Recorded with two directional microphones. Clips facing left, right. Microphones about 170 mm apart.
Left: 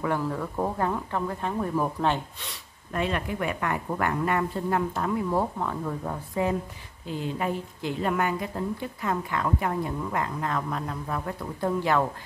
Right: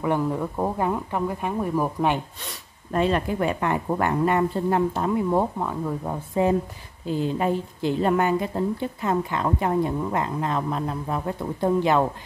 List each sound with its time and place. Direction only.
0.0 s speech: 20° right (ahead or behind)
2.9 s a woman's voice: 35° right (ahead or behind); by 6.1 s 10° right (ahead or behind)
6.4 s a woman's voice: 25° right (ahead or behind)